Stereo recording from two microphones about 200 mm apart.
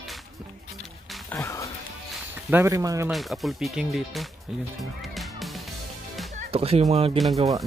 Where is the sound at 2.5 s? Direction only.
15° right (ahead or behind).